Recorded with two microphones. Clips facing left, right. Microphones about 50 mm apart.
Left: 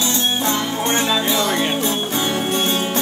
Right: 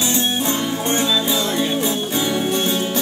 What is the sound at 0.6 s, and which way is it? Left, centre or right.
Music, left.